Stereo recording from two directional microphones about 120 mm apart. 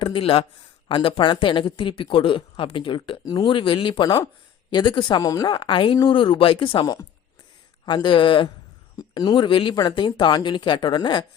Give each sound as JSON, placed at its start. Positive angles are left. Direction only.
{"t": 0.0, "sound": "speech", "side_deg": 50}